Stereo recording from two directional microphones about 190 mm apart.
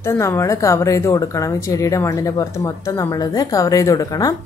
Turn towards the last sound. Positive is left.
turn(degrees=20)  # may be behind; listen again after turning